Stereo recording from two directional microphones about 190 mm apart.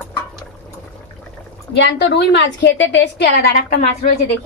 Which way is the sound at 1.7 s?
60° left (ahead or behind).